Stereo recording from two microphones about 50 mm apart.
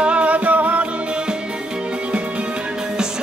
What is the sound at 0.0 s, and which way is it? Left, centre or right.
Music, right.